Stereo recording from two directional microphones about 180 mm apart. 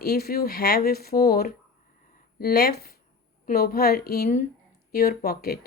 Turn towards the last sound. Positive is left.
turn(degrees=60)  # may be behind; listen again after turning